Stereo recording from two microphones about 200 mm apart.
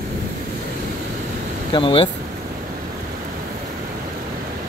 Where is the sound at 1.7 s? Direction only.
25° left (ahead or behind).